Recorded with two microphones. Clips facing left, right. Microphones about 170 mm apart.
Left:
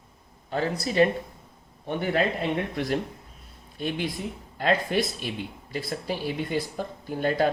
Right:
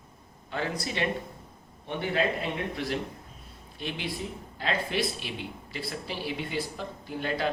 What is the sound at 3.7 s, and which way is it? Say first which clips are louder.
Speech: left 5 dB; 50° left (ahead or behind).